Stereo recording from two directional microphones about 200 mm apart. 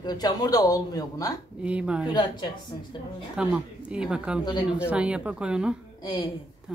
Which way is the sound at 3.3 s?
5° right (ahead or behind).